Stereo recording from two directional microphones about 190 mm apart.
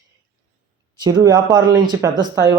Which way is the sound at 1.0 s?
20° right (ahead or behind).